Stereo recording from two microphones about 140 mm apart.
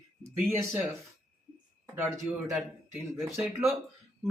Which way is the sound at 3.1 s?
20° right (ahead or behind).